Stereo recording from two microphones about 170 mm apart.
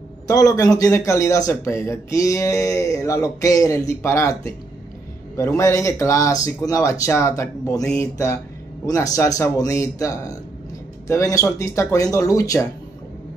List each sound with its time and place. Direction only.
0.3 s speech: 20° left (ahead or behind)